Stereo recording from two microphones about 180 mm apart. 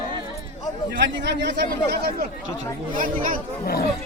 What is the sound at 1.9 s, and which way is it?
Speech, 60° right (ahead or behind).